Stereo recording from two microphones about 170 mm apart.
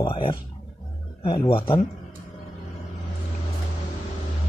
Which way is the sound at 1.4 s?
30° left (ahead or behind).